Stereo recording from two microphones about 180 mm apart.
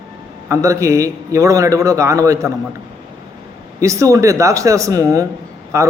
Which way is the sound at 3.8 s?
15° right (ahead or behind).